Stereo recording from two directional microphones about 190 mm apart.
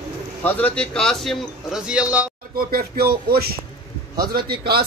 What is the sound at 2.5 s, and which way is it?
Speech, 50° right (ahead or behind).